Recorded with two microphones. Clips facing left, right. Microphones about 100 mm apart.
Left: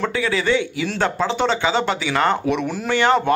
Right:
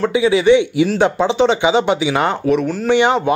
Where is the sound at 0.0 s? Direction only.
15° right (ahead or behind).